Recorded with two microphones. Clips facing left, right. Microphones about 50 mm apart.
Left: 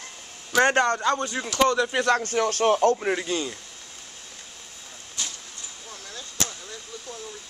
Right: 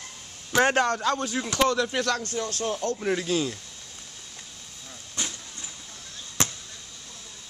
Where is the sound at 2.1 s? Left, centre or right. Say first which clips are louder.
Left 5 dB; left.